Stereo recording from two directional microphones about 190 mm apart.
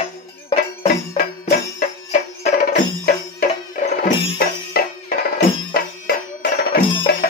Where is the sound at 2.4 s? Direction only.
50° left (ahead or behind).